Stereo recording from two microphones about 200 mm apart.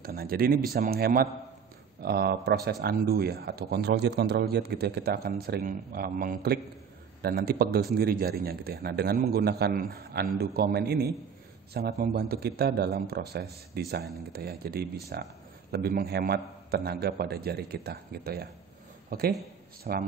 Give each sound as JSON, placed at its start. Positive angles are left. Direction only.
{"t": 0.0, "sound": "speech", "side_deg": -50}